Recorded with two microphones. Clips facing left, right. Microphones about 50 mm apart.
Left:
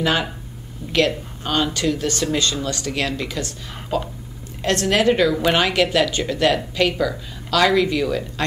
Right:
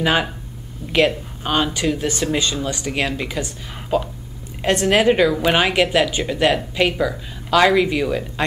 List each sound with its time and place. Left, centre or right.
0.0 s speech: centre